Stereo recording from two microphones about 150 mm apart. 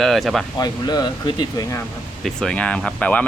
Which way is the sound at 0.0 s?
Centre (ahead or behind).